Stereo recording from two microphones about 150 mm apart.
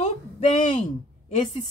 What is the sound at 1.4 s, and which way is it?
Speech, 35° left (ahead or behind).